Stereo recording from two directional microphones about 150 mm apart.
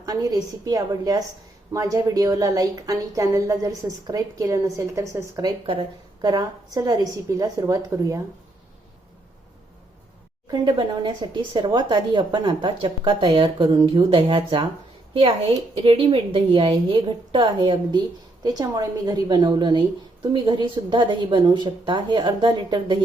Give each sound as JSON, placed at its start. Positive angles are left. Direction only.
{"t": 0.0, "sound": "a woman's voice", "side_deg": -25}
{"t": 10.5, "sound": "speech", "side_deg": -30}
{"t": 15.8, "sound": "a woman's voice", "side_deg": -35}